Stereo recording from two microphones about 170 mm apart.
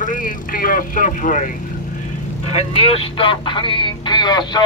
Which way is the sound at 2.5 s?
35° left (ahead or behind).